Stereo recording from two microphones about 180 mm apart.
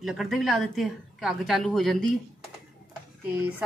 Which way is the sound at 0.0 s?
Centre (ahead or behind).